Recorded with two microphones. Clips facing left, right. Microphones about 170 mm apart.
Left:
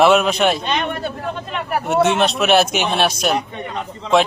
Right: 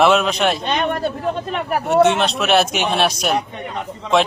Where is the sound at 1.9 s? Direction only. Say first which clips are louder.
Right 2 dB; 5° left (ahead or behind).